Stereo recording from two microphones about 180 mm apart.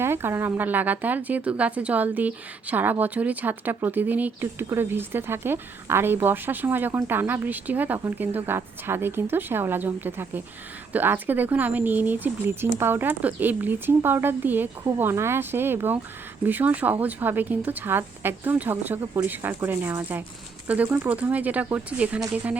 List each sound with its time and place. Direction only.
0.0 s speech: 15° right (ahead or behind)